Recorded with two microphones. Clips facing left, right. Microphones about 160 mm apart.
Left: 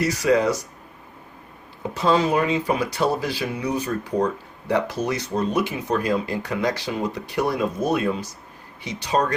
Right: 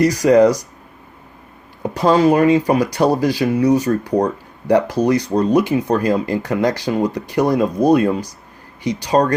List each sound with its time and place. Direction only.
0.0 s speech: 40° right (ahead or behind)
1.9 s speech: 40° right (ahead or behind)